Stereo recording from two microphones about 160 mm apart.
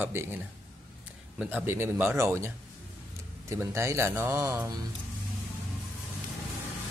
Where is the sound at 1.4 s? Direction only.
10° right (ahead or behind).